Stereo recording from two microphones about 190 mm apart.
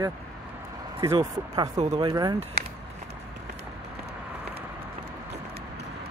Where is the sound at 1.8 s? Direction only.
30° right (ahead or behind).